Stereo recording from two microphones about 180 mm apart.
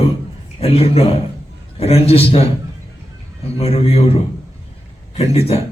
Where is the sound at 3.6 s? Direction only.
35° left (ahead or behind).